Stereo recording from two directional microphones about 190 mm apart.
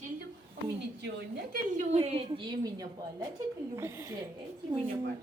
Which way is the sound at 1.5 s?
35° right (ahead or behind).